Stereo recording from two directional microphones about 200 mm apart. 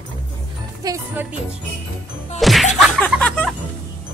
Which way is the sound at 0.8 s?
15° right (ahead or behind).